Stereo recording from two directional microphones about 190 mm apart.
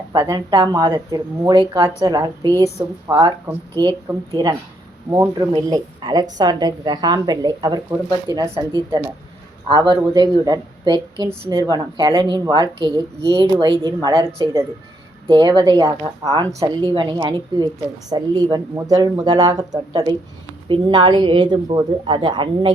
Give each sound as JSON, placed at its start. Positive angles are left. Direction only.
{"t": 0.1, "sound": "a woman's voice", "side_deg": -20}
{"t": 15.3, "sound": "a woman's voice", "side_deg": -25}